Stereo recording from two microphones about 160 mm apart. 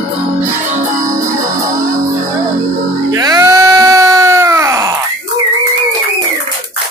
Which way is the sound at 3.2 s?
25° right (ahead or behind).